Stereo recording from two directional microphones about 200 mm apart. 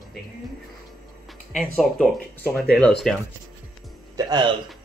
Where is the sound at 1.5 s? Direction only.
Centre (ahead or behind).